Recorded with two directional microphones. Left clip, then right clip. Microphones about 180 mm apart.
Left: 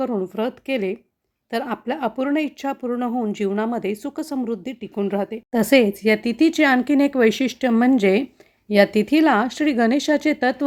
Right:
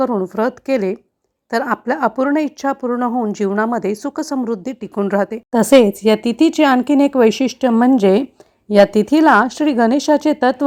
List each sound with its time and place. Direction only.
0.3 s a woman's voice: centre (ahead or behind)
3.1 s speech: 10° right (ahead or behind)
3.3 s a woman's voice: centre (ahead or behind)
5.5 s speech: 20° right (ahead or behind)